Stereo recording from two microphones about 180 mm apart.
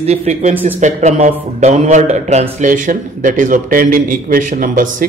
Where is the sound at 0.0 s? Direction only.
35° right (ahead or behind).